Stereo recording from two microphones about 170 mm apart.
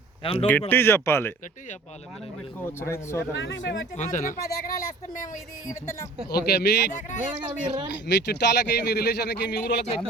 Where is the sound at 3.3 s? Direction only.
90° left.